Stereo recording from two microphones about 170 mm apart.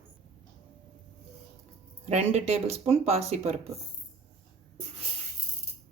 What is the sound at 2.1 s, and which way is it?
Speech, 40° right (ahead or behind).